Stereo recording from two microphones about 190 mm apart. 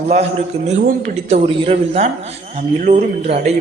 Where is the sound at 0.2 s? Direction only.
35° right (ahead or behind).